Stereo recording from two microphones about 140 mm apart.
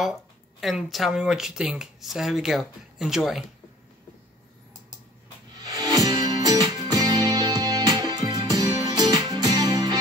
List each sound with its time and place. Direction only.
0.0 s speech: centre (ahead or behind)
5.6 s music: 25° right (ahead or behind)